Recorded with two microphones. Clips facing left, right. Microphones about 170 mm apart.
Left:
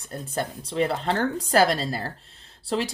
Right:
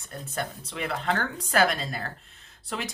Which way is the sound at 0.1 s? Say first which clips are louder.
Left 4 dB; 30° left (ahead or behind).